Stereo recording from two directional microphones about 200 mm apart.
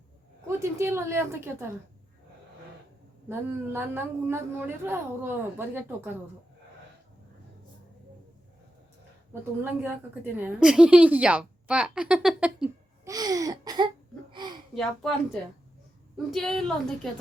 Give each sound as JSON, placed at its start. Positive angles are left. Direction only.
{"t": 0.4, "sound": "a woman's voice", "side_deg": -15}
{"t": 3.2, "sound": "a woman's voice", "side_deg": -10}
{"t": 9.3, "sound": "a woman's voice", "side_deg": -10}
{"t": 13.1, "sound": "a sound", "side_deg": -20}
{"t": 14.8, "sound": "a woman's voice", "side_deg": 5}